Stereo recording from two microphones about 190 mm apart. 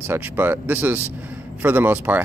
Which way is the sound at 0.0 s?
10° right (ahead or behind).